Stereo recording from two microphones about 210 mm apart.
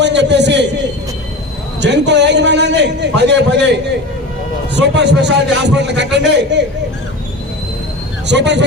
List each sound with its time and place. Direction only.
0.0 s a man's voice: 55° right (ahead or behind)
1.8 s a man's voice: 55° right (ahead or behind)
8.3 s a man's voice: 55° right (ahead or behind)